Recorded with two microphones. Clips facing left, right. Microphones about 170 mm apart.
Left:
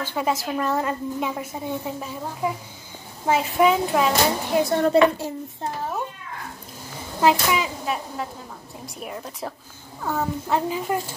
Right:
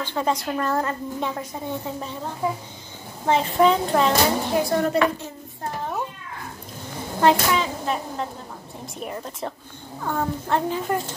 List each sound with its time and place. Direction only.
0.0 s a child's voice: 10° left (ahead or behind)
4.6 s a woman's voice: 25° left (ahead or behind)
7.2 s a child's voice: 5° left (ahead or behind)